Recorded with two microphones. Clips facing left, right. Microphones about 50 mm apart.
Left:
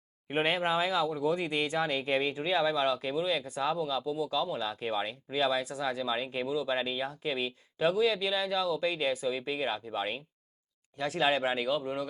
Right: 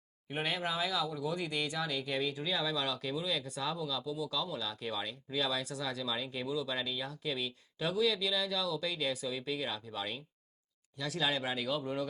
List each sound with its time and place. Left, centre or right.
0.3 s speech: left